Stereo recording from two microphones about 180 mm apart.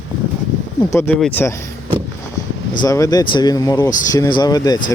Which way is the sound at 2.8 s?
20° left (ahead or behind).